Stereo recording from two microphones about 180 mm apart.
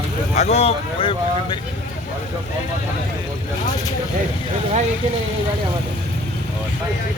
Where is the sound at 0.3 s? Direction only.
35° left (ahead or behind).